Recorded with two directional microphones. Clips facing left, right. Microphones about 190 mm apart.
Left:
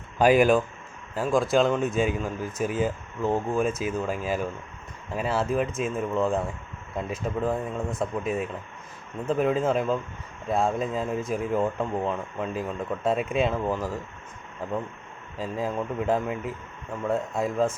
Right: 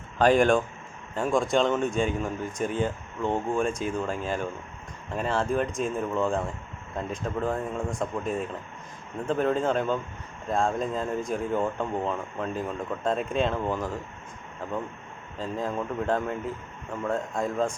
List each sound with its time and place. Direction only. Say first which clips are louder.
0.2 s speech: left 1 dB; 5° left (ahead or behind)